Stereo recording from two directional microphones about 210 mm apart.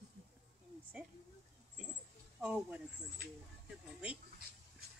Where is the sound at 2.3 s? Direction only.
5° right (ahead or behind).